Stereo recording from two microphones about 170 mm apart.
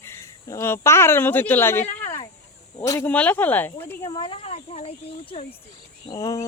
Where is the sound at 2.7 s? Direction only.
20° left (ahead or behind).